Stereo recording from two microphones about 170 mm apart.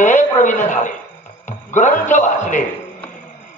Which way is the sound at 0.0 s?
45° left (ahead or behind).